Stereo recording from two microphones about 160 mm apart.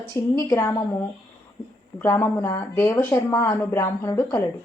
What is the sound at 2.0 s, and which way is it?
A woman's voice, 15° left (ahead or behind).